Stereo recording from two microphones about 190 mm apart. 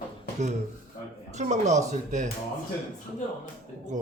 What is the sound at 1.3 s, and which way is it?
Speech, 40° right (ahead or behind).